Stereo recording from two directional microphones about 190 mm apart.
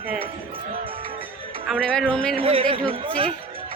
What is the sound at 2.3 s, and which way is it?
Speech, 30° right (ahead or behind).